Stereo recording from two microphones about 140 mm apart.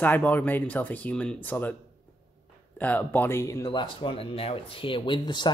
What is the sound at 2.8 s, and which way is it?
Speech, 10° left (ahead or behind).